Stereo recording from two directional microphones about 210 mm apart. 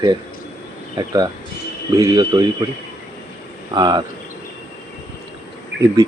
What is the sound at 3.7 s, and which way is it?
Speech, 20° right (ahead or behind).